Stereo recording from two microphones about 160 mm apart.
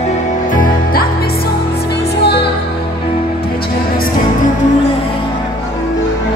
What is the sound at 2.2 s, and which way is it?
Music, 90° left.